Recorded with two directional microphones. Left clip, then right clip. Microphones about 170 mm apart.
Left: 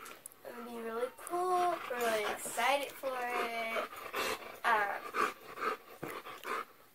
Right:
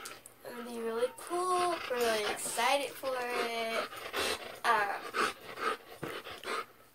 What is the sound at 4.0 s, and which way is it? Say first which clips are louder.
Dog: right 2 dB; 15° left (ahead or behind).